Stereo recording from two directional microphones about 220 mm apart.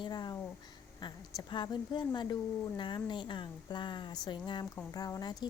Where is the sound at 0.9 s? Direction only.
20° left (ahead or behind).